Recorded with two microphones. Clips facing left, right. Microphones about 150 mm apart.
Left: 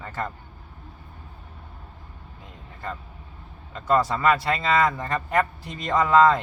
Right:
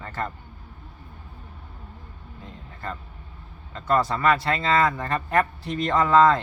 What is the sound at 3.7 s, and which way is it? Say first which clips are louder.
A man's voice: left 1 dB; 15° left (ahead or behind).